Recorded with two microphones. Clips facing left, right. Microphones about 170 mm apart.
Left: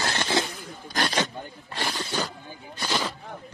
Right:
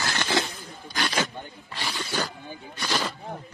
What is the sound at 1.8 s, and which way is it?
Zipper, 50° left (ahead or behind).